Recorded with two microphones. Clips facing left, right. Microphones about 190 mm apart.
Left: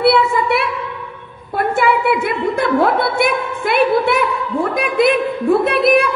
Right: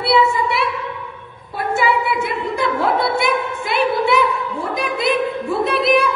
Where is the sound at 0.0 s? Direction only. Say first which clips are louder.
Left 3 dB; 55° left (ahead or behind).